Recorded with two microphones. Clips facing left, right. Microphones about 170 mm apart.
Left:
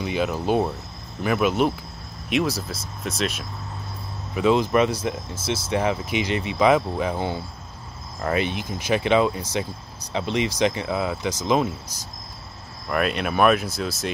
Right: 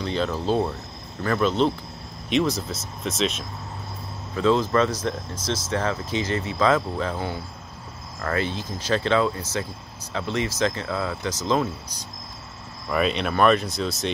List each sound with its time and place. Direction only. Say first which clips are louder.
0.0 s speech: left 1 dB; 10° left (ahead or behind)
4.4 s speech: left 1 dB; 15° left (ahead or behind)
12.9 s speech: even; 5° left (ahead or behind)